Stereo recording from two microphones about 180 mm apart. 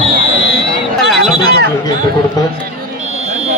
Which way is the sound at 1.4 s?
65° right (ahead or behind).